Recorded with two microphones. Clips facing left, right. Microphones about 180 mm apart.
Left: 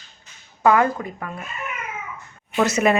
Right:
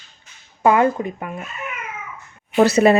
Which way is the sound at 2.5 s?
35° right (ahead or behind).